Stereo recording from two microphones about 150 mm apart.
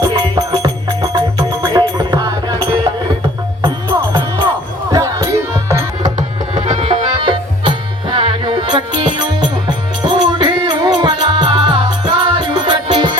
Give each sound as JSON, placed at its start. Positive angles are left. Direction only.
{"t": 0.0, "sound": "music", "side_deg": -30}
{"t": 3.6, "sound": "music", "side_deg": -25}
{"t": 6.1, "sound": "tabla", "side_deg": -45}
{"t": 9.6, "sound": "music", "side_deg": -30}